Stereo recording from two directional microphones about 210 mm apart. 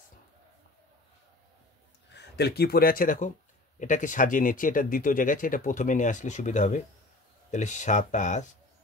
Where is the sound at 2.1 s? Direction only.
50° left (ahead or behind); by 8.4 s 35° left (ahead or behind).